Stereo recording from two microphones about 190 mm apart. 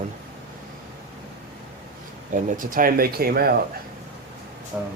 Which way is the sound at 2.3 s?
45° right (ahead or behind).